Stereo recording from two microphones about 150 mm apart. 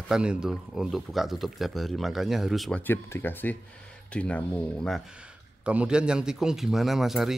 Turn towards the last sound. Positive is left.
turn(degrees=0)  # may be behind; listen again after turning